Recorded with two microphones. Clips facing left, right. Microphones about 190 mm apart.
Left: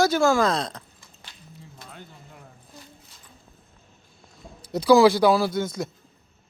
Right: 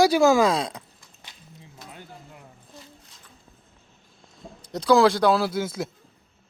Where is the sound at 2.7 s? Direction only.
Centre (ahead or behind).